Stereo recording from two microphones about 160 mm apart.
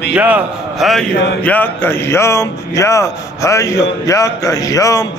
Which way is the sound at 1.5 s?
10° left (ahead or behind).